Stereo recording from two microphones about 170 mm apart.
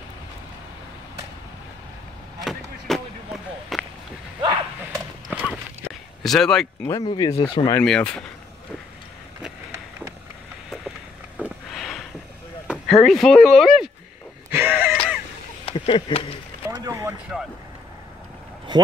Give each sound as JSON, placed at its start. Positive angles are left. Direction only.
{"t": 2.9, "sound": "a sound", "side_deg": 0}
{"t": 4.9, "sound": "horse", "side_deg": 5}
{"t": 6.2, "sound": "speech", "side_deg": 5}
{"t": 6.9, "sound": "speech", "side_deg": 25}
{"t": 7.8, "sound": "speech", "side_deg": 5}
{"t": 11.3, "sound": "sniff", "side_deg": -5}
{"t": 12.6, "sound": "speech", "side_deg": 0}
{"t": 14.5, "sound": "wheeze", "side_deg": -10}
{"t": 14.9, "sound": "a sound", "side_deg": -5}
{"t": 15.6, "sound": "speech", "side_deg": 35}
{"t": 16.7, "sound": "a sound", "side_deg": -20}
{"t": 17.3, "sound": "speech", "side_deg": -5}
{"t": 18.7, "sound": "a sound", "side_deg": -25}